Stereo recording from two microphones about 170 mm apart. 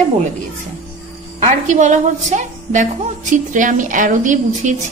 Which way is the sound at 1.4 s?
45° right (ahead or behind).